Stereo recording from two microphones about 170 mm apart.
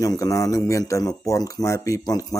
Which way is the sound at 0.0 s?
20° left (ahead or behind).